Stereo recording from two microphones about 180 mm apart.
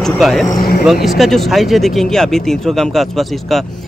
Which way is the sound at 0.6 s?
60° left (ahead or behind).